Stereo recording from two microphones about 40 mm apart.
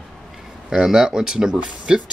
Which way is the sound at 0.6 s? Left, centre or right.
Centre.